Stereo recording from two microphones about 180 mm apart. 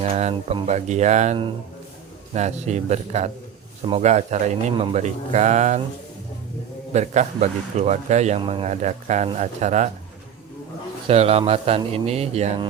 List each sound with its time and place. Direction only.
0.0 s a man's voice: 35° right (ahead or behind)
6.9 s a man's voice: 40° right (ahead or behind)
11.1 s a man's voice: 35° right (ahead or behind)